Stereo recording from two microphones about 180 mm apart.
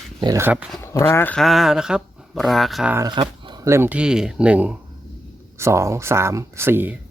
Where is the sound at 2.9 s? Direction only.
20° right (ahead or behind).